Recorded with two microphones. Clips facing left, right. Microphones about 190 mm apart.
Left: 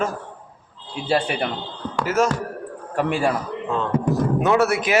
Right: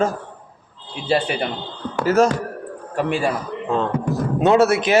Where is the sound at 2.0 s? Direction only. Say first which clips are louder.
Right 5 dB; 35° right (ahead or behind).